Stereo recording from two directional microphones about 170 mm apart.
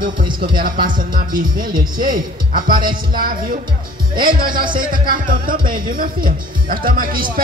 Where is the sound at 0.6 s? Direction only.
55° right (ahead or behind).